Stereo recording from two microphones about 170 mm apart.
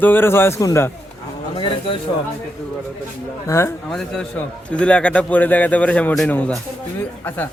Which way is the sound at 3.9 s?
5° left (ahead or behind).